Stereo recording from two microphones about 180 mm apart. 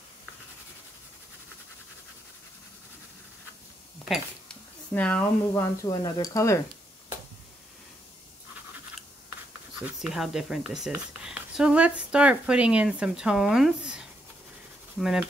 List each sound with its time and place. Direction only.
4.9 s speech: 10° left (ahead or behind)
9.8 s speech: 5° right (ahead or behind)